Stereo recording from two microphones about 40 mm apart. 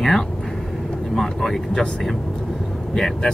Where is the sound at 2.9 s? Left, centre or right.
Centre.